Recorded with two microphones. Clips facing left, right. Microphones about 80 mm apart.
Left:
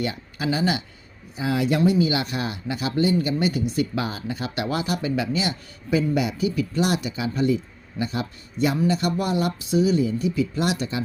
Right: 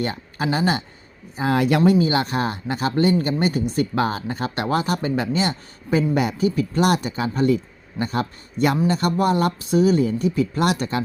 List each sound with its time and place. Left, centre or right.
0.0 s speech: right
2.0 s speech: right